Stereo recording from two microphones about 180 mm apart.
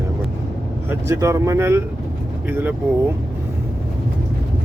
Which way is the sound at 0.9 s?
15° right (ahead or behind).